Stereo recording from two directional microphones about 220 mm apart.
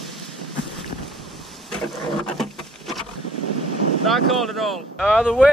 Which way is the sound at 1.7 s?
Centre (ahead or behind).